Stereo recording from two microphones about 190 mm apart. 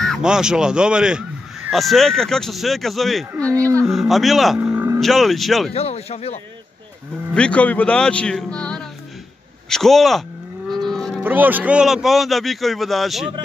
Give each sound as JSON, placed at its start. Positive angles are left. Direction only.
{"t": 0.0, "sound": "speech", "side_deg": 0}
{"t": 5.0, "sound": "speech", "side_deg": 0}
{"t": 5.7, "sound": "speech", "side_deg": 35}
{"t": 7.3, "sound": "speech", "side_deg": 5}
{"t": 10.7, "sound": "livestock", "side_deg": 0}
{"t": 11.2, "sound": "speech", "side_deg": -10}